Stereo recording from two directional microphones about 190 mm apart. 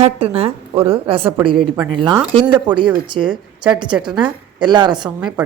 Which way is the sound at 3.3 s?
5° right (ahead or behind).